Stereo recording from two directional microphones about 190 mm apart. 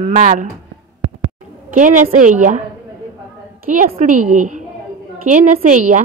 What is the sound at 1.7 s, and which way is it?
Speech, 40° right (ahead or behind).